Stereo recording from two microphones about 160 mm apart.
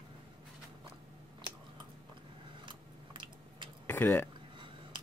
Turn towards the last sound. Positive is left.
turn(degrees=15)  # may be behind; listen again after turning